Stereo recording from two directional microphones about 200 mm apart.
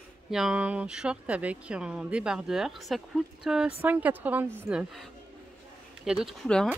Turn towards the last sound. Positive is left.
turn(degrees=0)  # may be behind; listen again after turning